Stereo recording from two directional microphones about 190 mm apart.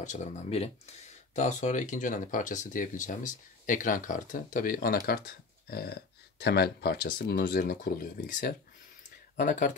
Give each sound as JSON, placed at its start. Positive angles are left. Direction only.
{"t": 0.0, "sound": "speech", "side_deg": 40}